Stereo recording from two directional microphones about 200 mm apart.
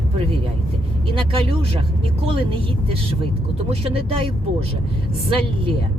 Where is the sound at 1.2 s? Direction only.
30° right (ahead or behind).